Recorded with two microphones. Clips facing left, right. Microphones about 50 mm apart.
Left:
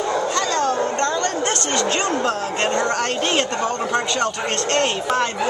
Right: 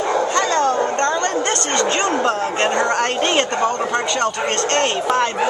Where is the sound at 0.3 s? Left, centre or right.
Right.